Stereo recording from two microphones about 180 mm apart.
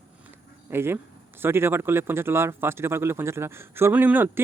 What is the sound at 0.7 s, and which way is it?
Speech, 15° right (ahead or behind).